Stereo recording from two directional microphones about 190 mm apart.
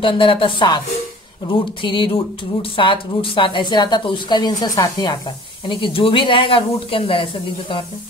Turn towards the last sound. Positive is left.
turn(degrees=25)  # may be behind; listen again after turning